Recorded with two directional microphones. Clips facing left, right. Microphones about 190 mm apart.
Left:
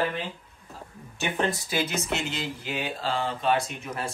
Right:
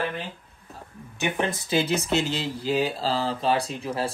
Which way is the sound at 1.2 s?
20° right (ahead or behind).